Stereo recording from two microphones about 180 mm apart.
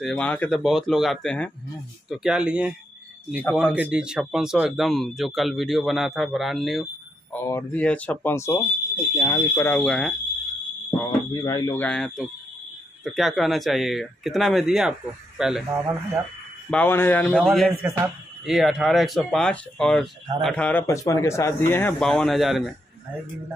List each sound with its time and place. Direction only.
0.0 s speech: 5° left (ahead or behind)
7.3 s speech: 15° left (ahead or behind)
11.1 s speech: 20° left (ahead or behind)
11.8 s speech: 5° left (ahead or behind)
16.7 s speech: 10° left (ahead or behind)